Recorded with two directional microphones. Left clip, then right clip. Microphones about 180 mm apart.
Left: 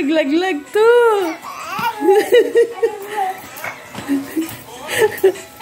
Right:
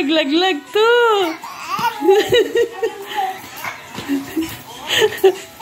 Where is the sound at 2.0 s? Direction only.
20° left (ahead or behind).